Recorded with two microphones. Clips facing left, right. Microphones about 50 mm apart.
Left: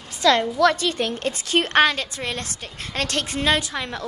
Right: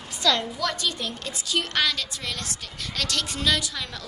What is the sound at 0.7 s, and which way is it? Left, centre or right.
A woman's voice, left.